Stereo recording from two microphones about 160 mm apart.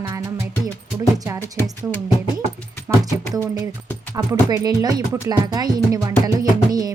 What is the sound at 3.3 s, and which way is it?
Speech, 20° right (ahead or behind).